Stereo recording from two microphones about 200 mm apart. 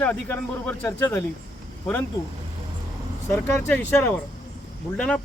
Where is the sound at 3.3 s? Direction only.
10° left (ahead or behind).